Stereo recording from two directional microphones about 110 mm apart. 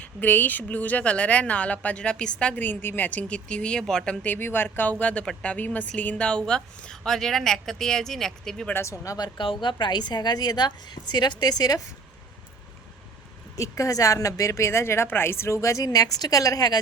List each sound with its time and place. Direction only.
0.0 s speech: 15° left (ahead or behind)
8.7 s a woman's voice: 25° left (ahead or behind)
13.6 s a woman's voice: 30° left (ahead or behind)